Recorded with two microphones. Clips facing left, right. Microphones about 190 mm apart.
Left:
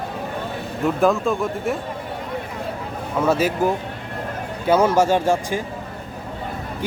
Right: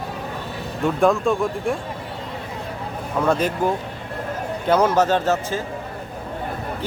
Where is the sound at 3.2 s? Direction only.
5° left (ahead or behind).